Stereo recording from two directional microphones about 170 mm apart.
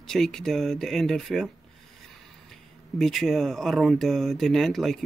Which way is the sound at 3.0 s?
Centre (ahead or behind).